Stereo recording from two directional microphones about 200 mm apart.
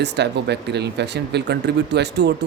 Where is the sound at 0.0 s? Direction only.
60° right (ahead or behind).